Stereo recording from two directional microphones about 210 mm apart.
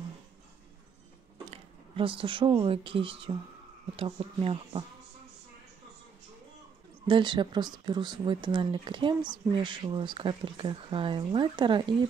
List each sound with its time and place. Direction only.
1.5 s speech: 25° right (ahead or behind)
7.1 s speech: 20° right (ahead or behind)